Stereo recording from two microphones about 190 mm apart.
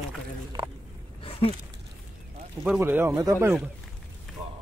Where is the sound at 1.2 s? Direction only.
30° left (ahead or behind).